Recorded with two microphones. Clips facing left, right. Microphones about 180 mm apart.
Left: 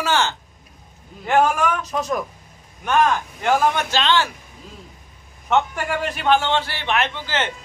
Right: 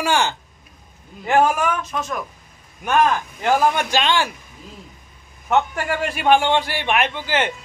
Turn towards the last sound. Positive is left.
turn(degrees=-10)  # may be behind; listen again after turning